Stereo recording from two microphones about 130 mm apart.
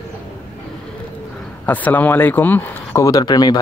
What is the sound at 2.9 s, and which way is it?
Speech, 25° left (ahead or behind).